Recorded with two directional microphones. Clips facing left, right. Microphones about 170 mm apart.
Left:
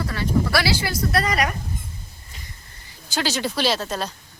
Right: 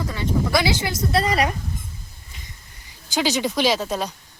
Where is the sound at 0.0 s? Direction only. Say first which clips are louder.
Left 1 dB; 20° right (ahead or behind).